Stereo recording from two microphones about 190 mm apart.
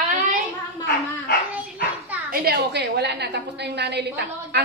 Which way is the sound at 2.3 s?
55° right (ahead or behind).